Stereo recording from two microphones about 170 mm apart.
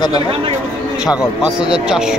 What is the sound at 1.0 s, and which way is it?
A man's voice, 5° right (ahead or behind).